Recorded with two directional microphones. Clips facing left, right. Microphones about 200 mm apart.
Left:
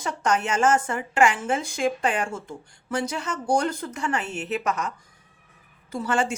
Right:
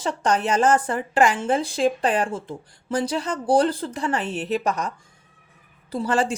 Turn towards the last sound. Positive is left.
turn(degrees=-35)  # may be behind; listen again after turning